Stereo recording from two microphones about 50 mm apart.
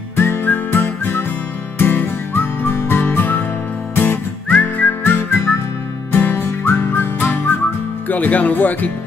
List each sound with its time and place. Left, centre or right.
0.1 s music: left
4.5 s whistling: left
5.0 s music: left
8.1 s speech: left